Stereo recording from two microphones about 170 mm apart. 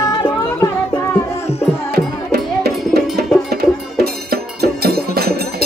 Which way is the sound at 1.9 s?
70° right (ahead or behind).